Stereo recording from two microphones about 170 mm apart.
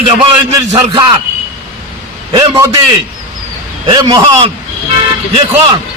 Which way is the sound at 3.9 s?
25° right (ahead or behind).